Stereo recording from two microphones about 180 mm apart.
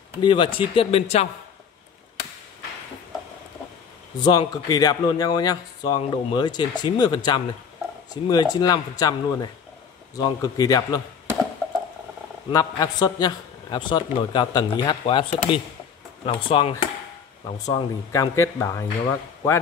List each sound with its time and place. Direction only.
0.2 s speech: 25° left (ahead or behind)
4.2 s speech: 25° left (ahead or behind)
12.4 s speech: 20° left (ahead or behind)